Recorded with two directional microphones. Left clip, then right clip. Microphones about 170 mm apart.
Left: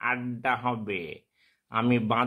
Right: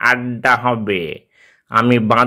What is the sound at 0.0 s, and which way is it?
A man's voice, 20° right (ahead or behind).